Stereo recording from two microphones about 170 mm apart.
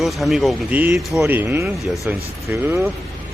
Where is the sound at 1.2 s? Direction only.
15° right (ahead or behind).